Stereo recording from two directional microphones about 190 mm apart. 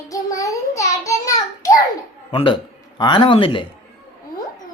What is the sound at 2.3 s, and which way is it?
Speech, 25° left (ahead or behind).